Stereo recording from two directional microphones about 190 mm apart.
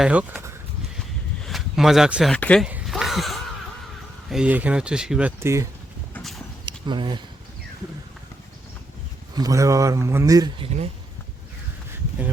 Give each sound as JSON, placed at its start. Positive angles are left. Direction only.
{"t": 0.0, "sound": "speech", "side_deg": -5}
{"t": 2.6, "sound": "a sound", "side_deg": -5}
{"t": 4.3, "sound": "speech", "side_deg": -5}
{"t": 6.1, "sound": "clip-clop", "side_deg": 0}
{"t": 6.7, "sound": "speech", "side_deg": -25}
{"t": 9.3, "sound": "a man's voice", "side_deg": -20}